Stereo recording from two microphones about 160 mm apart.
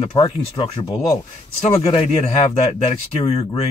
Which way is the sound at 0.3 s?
35° left (ahead or behind).